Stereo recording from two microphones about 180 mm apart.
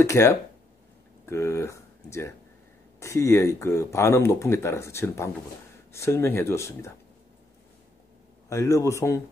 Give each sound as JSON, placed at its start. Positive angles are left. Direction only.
{"t": 0.0, "sound": "speech", "side_deg": 15}
{"t": 8.5, "sound": "speech", "side_deg": 15}